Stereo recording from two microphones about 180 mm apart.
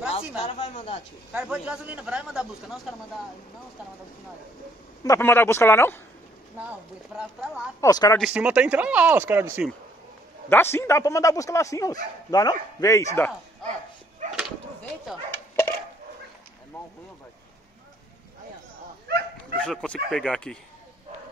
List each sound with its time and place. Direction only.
0.6 s speech: 40° left (ahead or behind)
1.3 s a man's voice: 5° right (ahead or behind)
5.0 s speech: 15° left (ahead or behind)
6.6 s a man's voice: 5° right (ahead or behind)
7.8 s speech: 20° left (ahead or behind)
8.2 s speech: 5° right (ahead or behind)
10.5 s speech: 15° left (ahead or behind)
14.2 s dog: 45° right (ahead or behind)
19.0 s dog: 65° right (ahead or behind)
19.6 s a man's voice: 5° left (ahead or behind)